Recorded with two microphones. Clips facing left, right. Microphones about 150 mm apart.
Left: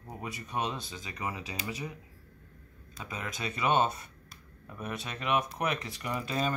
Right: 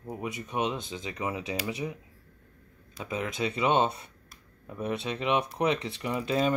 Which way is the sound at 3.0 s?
25° right (ahead or behind).